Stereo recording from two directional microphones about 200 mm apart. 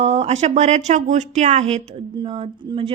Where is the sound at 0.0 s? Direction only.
30° right (ahead or behind).